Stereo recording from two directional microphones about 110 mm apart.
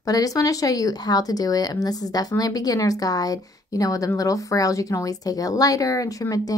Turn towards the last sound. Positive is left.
turn(degrees=35)  # may be behind; listen again after turning